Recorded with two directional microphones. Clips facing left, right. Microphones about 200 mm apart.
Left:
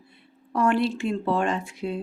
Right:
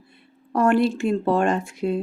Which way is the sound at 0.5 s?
45° right (ahead or behind).